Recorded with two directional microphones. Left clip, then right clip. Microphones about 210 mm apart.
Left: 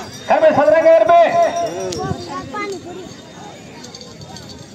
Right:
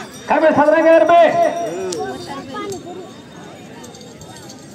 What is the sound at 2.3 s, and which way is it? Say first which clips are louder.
Speech: left 2 dB; centre (ahead or behind).